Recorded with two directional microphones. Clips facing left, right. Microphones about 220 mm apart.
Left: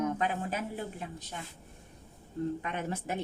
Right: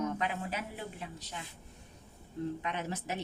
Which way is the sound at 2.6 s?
50° left (ahead or behind).